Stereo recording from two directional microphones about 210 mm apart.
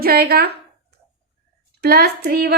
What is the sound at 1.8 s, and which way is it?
Speech, 50° right (ahead or behind).